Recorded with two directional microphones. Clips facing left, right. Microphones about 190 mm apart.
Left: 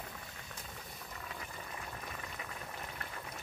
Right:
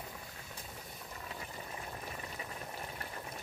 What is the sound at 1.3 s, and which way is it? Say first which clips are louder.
Boiling: right 2 dB; 20° right (ahead or behind).